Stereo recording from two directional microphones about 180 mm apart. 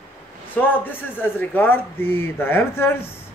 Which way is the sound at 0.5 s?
10° left (ahead or behind).